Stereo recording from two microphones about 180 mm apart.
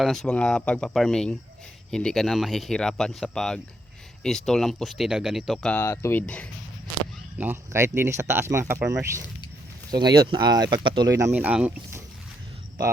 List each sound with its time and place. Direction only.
0.0 s speech: centre (ahead or behind)
5.8 s speech: 15° left (ahead or behind)
7.3 s speech: 10° right (ahead or behind)